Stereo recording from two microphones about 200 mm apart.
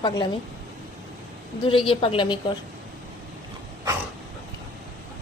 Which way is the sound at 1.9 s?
25° left (ahead or behind).